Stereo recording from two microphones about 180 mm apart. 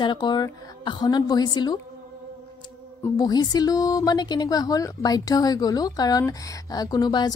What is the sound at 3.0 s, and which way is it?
A woman's voice, 20° left (ahead or behind).